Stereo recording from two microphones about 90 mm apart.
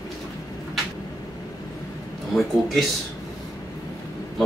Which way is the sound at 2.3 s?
Centre (ahead or behind).